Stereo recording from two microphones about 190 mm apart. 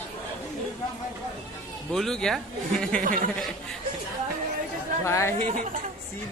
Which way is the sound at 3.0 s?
45° right (ahead or behind).